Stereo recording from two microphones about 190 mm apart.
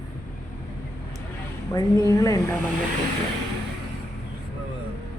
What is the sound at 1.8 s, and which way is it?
Speech, 15° left (ahead or behind).